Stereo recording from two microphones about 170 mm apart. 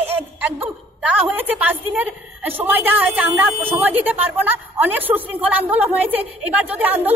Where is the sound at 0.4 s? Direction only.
10° right (ahead or behind).